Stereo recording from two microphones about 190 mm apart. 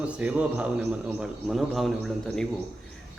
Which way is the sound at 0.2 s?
5° right (ahead or behind).